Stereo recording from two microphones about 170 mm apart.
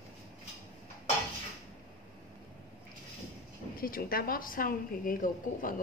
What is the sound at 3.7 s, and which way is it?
A woman's voice, 60° left (ahead or behind).